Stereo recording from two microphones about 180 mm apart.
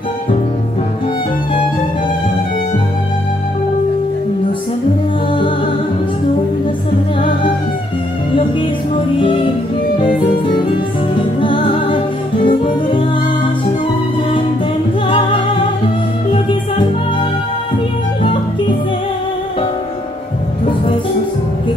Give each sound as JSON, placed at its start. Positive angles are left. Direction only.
{"t": 11.1, "sound": "music", "side_deg": 30}